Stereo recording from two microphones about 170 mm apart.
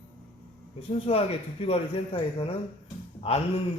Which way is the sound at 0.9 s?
35° left (ahead or behind).